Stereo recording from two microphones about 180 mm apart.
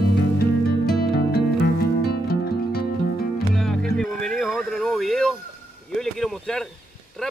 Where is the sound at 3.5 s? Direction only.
Centre (ahead or behind).